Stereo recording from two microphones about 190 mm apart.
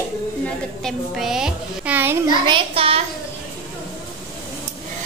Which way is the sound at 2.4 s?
25° right (ahead or behind).